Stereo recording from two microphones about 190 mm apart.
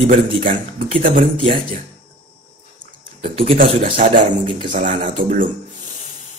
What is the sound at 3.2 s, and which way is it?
Speech, 30° right (ahead or behind).